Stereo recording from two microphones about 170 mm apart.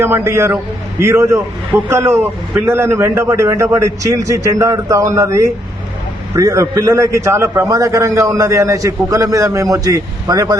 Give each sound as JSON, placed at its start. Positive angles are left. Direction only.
{"t": 0.0, "sound": "a man's voice", "side_deg": -15}